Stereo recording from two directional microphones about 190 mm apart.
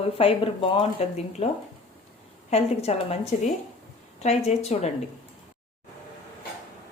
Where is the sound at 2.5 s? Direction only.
35° left (ahead or behind).